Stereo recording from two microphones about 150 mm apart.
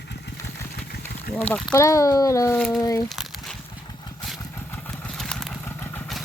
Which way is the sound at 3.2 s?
Centre (ahead or behind).